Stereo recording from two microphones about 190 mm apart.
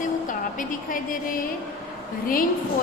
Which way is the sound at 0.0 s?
45° left (ahead or behind).